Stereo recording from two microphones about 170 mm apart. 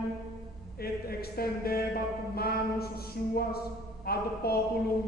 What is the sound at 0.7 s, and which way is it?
Speech, 65° left (ahead or behind).